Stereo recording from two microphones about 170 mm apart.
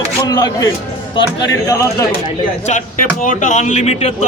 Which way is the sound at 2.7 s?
40° left (ahead or behind).